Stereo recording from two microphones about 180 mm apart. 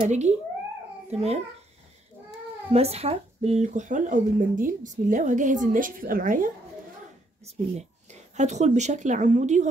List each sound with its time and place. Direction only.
0.0 s a child's voice: 40° right (ahead or behind)
2.7 s speech: 35° right (ahead or behind)
7.4 s speech: 40° right (ahead or behind)